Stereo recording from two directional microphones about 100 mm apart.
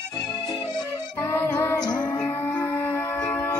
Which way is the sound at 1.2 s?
25° left (ahead or behind).